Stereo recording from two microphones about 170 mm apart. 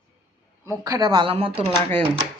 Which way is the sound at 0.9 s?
20° right (ahead or behind).